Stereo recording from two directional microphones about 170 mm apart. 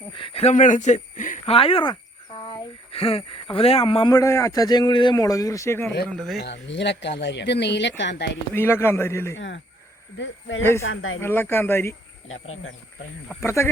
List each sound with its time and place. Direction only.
0.2 s speech: 35° left (ahead or behind); by 1.4 s 50° left (ahead or behind)
1.5 s speech: 35° left (ahead or behind); by 5.9 s 15° left (ahead or behind)
6.1 s speech: centre (ahead or behind)
6.4 s speech: 90° left
8.5 s speech: 15° left (ahead or behind)
10.6 s speech: 15° left (ahead or behind)
13.4 s speech: 15° left (ahead or behind)